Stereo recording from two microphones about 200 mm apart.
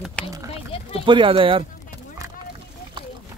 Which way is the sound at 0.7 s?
30° left (ahead or behind).